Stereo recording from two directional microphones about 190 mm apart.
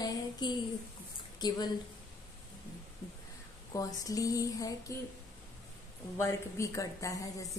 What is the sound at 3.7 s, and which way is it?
Speech, 20° left (ahead or behind).